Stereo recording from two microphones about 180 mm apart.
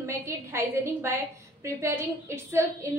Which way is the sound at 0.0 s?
15° right (ahead or behind).